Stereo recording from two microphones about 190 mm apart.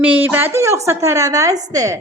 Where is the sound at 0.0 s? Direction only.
10° right (ahead or behind).